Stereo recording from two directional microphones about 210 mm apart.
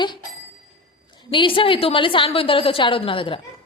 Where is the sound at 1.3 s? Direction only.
25° left (ahead or behind).